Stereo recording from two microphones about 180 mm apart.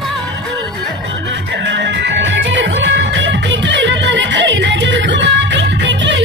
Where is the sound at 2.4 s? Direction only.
80° right.